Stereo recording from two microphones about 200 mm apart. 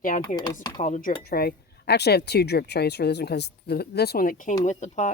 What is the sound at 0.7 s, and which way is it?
Speech, 40° left (ahead or behind).